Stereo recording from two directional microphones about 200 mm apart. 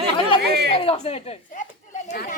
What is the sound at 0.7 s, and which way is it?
Speech, 30° left (ahead or behind).